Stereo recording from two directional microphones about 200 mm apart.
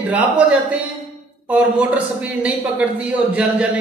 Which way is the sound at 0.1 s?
5° right (ahead or behind).